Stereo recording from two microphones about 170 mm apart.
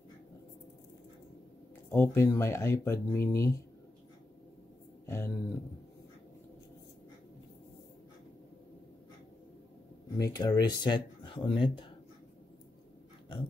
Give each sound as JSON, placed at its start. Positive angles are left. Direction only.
{"t": 1.9, "sound": "speech", "side_deg": 15}
{"t": 5.0, "sound": "speech", "side_deg": 15}
{"t": 10.1, "sound": "speech", "side_deg": 25}